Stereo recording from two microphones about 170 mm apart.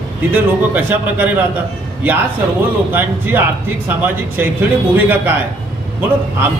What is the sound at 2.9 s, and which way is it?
A man's voice, 10° right (ahead or behind).